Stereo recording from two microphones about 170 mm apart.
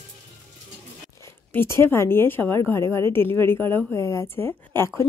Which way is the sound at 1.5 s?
15° left (ahead or behind).